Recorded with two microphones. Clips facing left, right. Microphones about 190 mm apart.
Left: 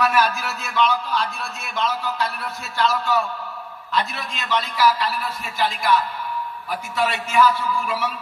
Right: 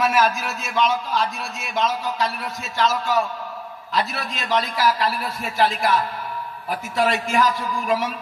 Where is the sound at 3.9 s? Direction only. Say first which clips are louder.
Right 1 dB; 40° right (ahead or behind).